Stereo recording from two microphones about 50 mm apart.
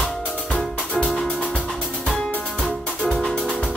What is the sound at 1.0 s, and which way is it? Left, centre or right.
Music, centre.